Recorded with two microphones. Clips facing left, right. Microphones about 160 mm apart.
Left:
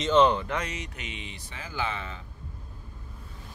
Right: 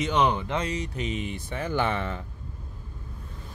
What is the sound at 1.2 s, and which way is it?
Speech, 50° right (ahead or behind).